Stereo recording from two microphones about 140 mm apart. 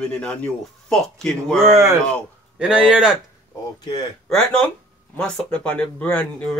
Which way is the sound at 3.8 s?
30° left (ahead or behind).